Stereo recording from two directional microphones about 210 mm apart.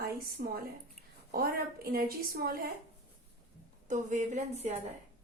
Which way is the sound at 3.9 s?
35° right (ahead or behind).